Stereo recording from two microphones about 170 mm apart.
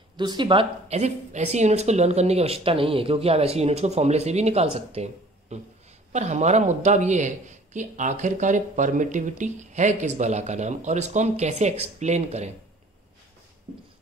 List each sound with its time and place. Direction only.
0.2 s speech: 25° right (ahead or behind)